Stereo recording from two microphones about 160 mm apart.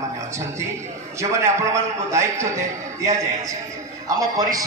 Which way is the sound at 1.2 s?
20° right (ahead or behind).